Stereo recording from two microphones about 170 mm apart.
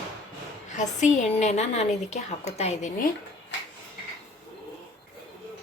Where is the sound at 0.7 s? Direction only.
45° left (ahead or behind).